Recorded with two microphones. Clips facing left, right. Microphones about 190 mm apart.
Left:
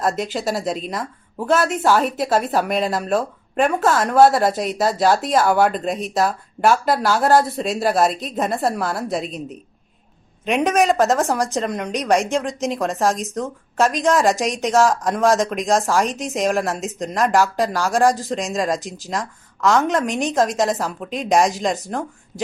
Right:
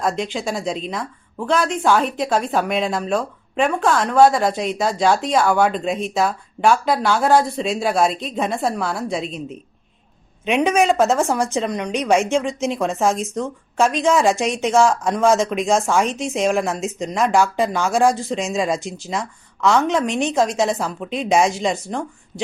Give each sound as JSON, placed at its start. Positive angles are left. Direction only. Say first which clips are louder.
{"t": 0.0, "sound": "speech", "louder": "left 1 dB", "side_deg": 5}
{"t": 12.5, "sound": "speech", "louder": "right 1 dB", "side_deg": 40}
{"t": 12.8, "sound": "speech", "louder": "right 1 dB", "side_deg": 0}